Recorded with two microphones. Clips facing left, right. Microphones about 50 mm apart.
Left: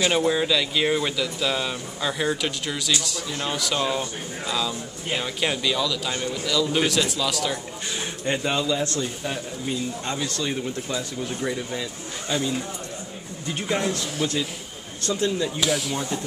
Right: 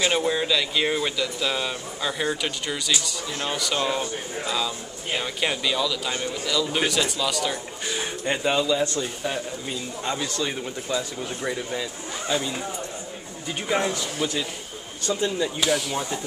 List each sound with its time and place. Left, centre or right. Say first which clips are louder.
0.0 s speech: left 2 dB; centre
8.8 s speech: right 1 dB; centre
9.2 s speech: right 1 dB; centre
13.7 s speech: right 2 dB; centre